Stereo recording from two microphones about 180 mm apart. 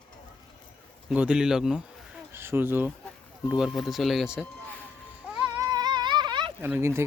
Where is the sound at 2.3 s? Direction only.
15° right (ahead or behind).